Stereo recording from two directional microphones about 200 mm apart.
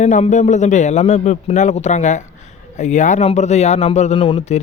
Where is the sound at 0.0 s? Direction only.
35° left (ahead or behind).